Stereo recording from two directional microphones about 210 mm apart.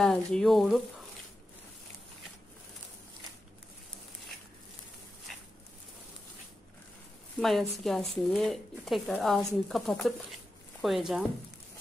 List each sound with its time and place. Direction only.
0.0 s speech: 5° left (ahead or behind)
7.3 s speech: centre (ahead or behind)